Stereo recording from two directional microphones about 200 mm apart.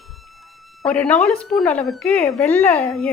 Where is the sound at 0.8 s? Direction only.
5° left (ahead or behind).